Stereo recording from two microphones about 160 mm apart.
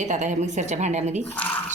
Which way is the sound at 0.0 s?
50° right (ahead or behind).